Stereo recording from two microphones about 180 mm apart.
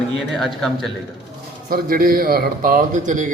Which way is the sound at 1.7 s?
55° right (ahead or behind).